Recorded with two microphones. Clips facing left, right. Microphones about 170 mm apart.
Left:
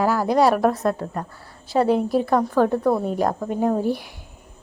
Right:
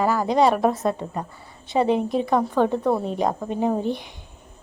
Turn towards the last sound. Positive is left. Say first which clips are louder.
# left 2 dB
turn(degrees=5)  # may be behind; listen again after turning